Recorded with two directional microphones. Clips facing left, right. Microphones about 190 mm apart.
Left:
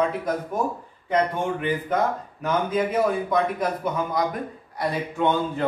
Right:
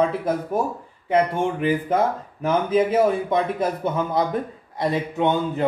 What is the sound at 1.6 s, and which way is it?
A man's voice, 30° right (ahead or behind).